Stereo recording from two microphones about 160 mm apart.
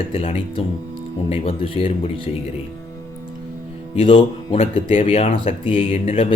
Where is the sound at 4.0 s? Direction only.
35° left (ahead or behind).